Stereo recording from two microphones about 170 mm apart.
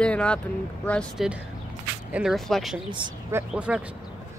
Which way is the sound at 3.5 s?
5° right (ahead or behind).